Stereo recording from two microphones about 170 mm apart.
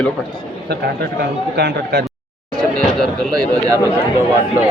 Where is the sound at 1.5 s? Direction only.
90° right.